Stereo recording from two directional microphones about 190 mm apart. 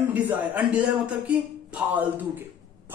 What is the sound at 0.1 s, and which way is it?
Speech, 10° right (ahead or behind).